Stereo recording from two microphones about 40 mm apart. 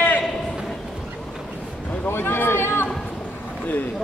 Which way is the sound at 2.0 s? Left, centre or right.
Left.